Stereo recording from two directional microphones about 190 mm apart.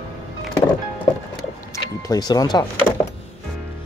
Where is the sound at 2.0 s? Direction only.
20° left (ahead or behind).